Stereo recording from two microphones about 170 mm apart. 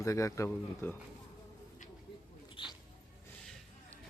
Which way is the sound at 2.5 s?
30° left (ahead or behind).